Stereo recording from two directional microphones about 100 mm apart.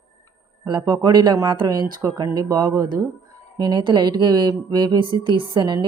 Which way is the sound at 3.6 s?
50° right (ahead or behind).